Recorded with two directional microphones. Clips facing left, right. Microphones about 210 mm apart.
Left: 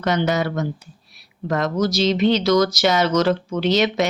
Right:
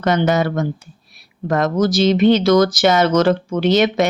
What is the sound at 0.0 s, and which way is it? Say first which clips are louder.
Speech: right 4 dB; 50° right (ahead or behind).